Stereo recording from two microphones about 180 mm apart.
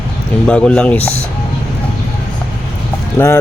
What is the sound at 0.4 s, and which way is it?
Speech, 5° left (ahead or behind).